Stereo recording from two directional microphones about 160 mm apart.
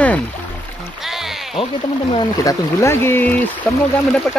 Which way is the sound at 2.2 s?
20° left (ahead or behind).